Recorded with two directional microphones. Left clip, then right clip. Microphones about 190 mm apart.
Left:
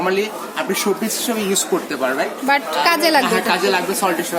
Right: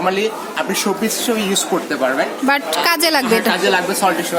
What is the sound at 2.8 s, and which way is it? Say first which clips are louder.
Speech: left 2 dB; 35° right (ahead or behind).